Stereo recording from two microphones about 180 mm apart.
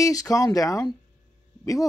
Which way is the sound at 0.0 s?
20° left (ahead or behind).